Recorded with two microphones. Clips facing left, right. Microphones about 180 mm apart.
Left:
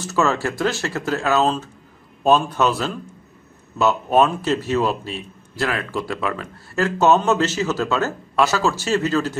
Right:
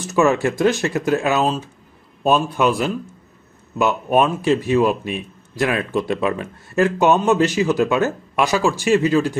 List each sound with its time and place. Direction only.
0.0 s speech: 15° right (ahead or behind)